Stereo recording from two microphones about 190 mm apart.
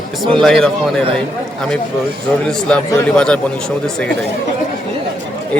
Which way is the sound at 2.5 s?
5° left (ahead or behind).